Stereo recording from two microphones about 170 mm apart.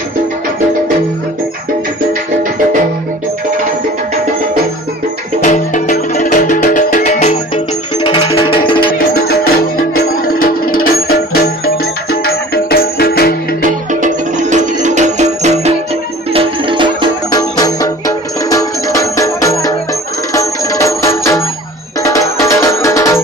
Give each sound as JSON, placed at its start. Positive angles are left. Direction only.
{"t": 5.4, "sound": "music", "side_deg": 45}
{"t": 8.9, "sound": "music", "side_deg": 65}
{"t": 13.6, "sound": "music", "side_deg": -45}
{"t": 16.3, "sound": "music", "side_deg": -30}
{"t": 17.3, "sound": "music", "side_deg": 20}